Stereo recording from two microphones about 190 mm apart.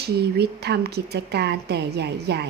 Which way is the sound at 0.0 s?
60° right (ahead or behind).